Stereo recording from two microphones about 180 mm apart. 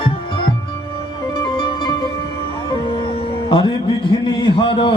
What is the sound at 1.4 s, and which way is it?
Music, 25° left (ahead or behind).